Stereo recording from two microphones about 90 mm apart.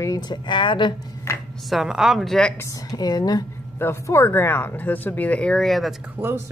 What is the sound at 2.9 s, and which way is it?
Speech, 45° left (ahead or behind).